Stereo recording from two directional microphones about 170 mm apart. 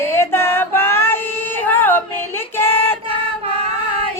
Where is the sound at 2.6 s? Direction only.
15° left (ahead or behind).